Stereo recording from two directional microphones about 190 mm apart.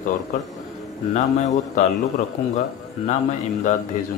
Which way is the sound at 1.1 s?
40° left (ahead or behind).